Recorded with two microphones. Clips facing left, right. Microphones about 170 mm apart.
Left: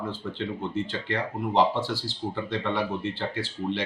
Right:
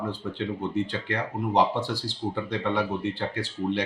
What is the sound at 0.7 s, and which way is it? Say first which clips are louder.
Speech: right 1 dB; 15° right (ahead or behind).